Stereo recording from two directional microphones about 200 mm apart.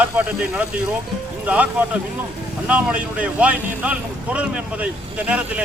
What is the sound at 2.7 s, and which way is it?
Speech, 5° right (ahead or behind).